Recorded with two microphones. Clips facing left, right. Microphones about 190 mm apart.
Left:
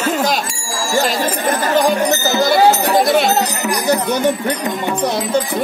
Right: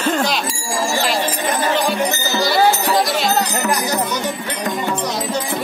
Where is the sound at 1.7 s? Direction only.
45° left (ahead or behind).